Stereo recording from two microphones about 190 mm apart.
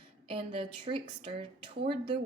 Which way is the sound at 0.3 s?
25° right (ahead or behind).